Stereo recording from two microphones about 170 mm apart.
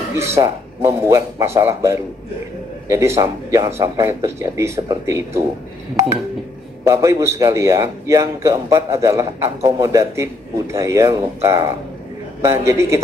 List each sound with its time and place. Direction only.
0.1 s a man's voice: 15° right (ahead or behind)
6.9 s a man's voice: 15° right (ahead or behind)